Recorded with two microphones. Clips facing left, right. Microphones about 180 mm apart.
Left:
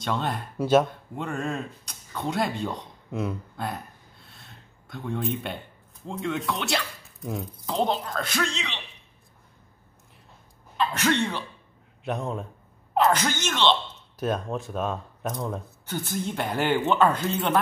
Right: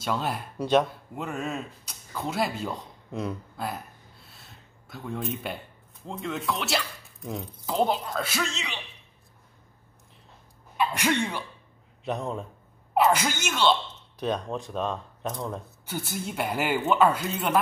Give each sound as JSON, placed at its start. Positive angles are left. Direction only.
{"t": 0.0, "sound": "speech", "side_deg": -5}
{"t": 10.8, "sound": "speech", "side_deg": -10}
{"t": 12.0, "sound": "a man's voice", "side_deg": 0}
{"t": 14.2, "sound": "speech", "side_deg": 5}
{"t": 15.8, "sound": "speech", "side_deg": -10}